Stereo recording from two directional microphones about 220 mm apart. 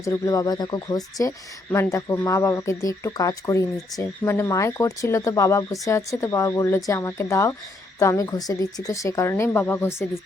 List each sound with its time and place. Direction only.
0.0 s speech: 15° left (ahead or behind)